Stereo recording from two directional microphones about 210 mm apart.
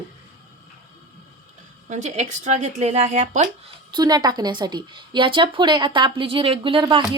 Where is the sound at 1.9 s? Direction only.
35° right (ahead or behind).